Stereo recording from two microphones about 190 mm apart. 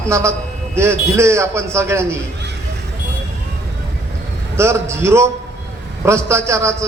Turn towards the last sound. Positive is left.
turn(degrees=-15)  # may be behind; listen again after turning